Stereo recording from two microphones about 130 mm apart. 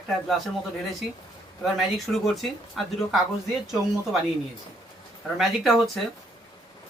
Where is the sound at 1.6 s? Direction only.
Centre (ahead or behind).